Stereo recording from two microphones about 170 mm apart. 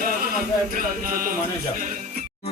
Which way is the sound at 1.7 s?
50° right (ahead or behind).